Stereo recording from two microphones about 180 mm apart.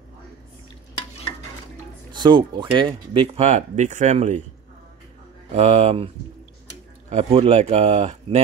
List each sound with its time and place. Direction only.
2.1 s speech: 25° right (ahead or behind); by 4.4 s 40° right (ahead or behind)
5.5 s speech: 35° right (ahead or behind)